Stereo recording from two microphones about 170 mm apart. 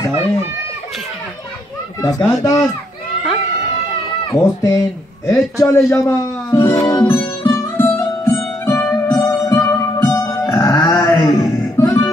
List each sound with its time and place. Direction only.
2.0 s speech: 20° left (ahead or behind)
4.3 s speech: 20° left (ahead or behind)
5.6 s music: 15° left (ahead or behind)